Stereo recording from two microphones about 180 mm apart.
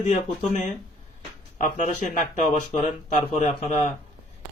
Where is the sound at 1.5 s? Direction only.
45° left (ahead or behind).